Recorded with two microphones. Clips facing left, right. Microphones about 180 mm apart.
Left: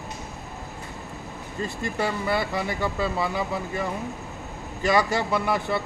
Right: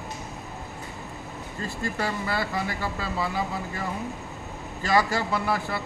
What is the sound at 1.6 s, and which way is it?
Speech, 20° left (ahead or behind).